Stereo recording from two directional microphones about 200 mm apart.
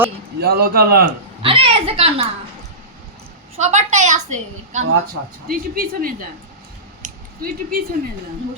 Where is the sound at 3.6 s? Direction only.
35° right (ahead or behind).